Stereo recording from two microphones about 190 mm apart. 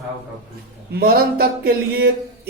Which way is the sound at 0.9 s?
55° right (ahead or behind).